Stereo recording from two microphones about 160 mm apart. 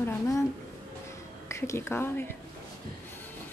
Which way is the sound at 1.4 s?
15° left (ahead or behind).